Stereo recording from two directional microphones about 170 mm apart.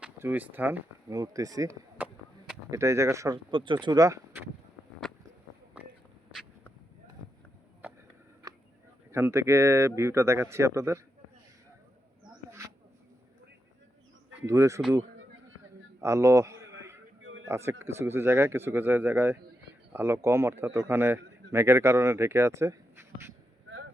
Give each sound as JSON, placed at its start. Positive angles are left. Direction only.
{"t": 0.0, "sound": "speech", "side_deg": -10}
{"t": 9.1, "sound": "speech", "side_deg": -15}
{"t": 12.5, "sound": "a sound", "side_deg": -15}
{"t": 14.4, "sound": "speech", "side_deg": -15}
{"t": 16.0, "sound": "a sound", "side_deg": -15}
{"t": 17.5, "sound": "speech", "side_deg": -15}